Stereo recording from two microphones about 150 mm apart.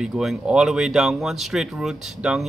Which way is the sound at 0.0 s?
5° right (ahead or behind).